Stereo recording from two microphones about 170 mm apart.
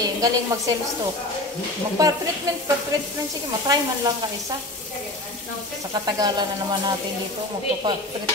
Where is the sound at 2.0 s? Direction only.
20° right (ahead or behind).